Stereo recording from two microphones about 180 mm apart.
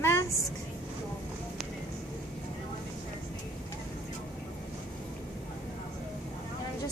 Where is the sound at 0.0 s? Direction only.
15° left (ahead or behind).